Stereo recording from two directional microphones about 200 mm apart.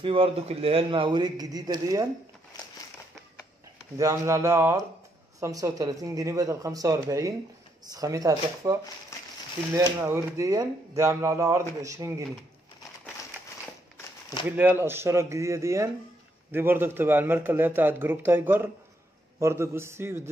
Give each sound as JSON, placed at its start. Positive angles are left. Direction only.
{"t": 0.0, "sound": "a man's voice", "side_deg": -25}
{"t": 4.0, "sound": "speech", "side_deg": -15}
{"t": 9.8, "sound": "speech", "side_deg": -10}
{"t": 14.5, "sound": "speech", "side_deg": -10}